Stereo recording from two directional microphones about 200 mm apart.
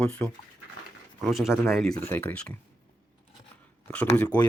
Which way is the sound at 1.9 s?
10° left (ahead or behind).